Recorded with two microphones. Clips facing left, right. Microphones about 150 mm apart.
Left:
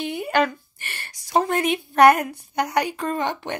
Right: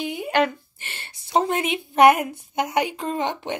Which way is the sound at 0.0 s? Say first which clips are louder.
Left 1 dB; 20° right (ahead or behind).